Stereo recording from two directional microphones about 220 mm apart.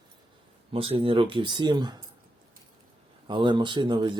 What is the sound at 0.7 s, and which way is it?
Speech, 25° right (ahead or behind).